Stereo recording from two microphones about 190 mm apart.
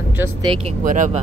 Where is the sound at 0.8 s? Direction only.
40° right (ahead or behind).